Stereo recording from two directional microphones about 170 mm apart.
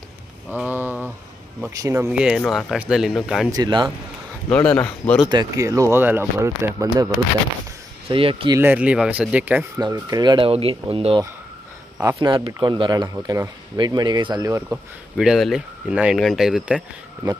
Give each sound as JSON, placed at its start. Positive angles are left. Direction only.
{"t": 0.5, "sound": "speech", "side_deg": -10}
{"t": 3.5, "sound": "speech", "side_deg": -25}
{"t": 4.5, "sound": "speech", "side_deg": 5}
{"t": 5.3, "sound": "speech", "side_deg": -20}
{"t": 8.1, "sound": "speech", "side_deg": -30}
{"t": 8.5, "sound": "speech", "side_deg": -10}
{"t": 9.8, "sound": "speech", "side_deg": -25}
{"t": 12.0, "sound": "speech", "side_deg": -15}
{"t": 14.7, "sound": "speech", "side_deg": -5}